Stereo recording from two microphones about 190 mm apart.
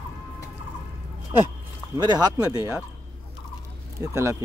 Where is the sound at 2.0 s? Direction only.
20° right (ahead or behind).